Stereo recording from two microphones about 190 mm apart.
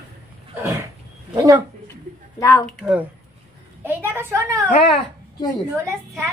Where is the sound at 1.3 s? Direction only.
15° right (ahead or behind).